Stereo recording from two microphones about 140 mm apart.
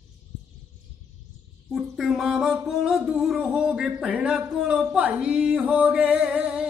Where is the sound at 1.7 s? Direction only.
Centre (ahead or behind).